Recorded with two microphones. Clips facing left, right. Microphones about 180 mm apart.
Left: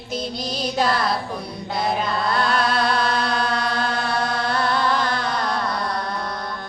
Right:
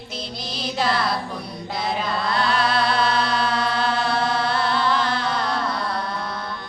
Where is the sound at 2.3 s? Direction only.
45° left (ahead or behind).